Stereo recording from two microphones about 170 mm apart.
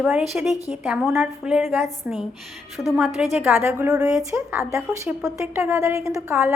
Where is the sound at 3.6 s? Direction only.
15° right (ahead or behind).